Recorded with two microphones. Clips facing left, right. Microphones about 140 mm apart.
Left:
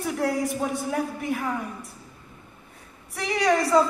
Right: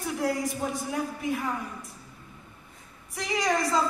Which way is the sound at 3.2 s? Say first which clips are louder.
Left 5 dB; 65° left (ahead or behind).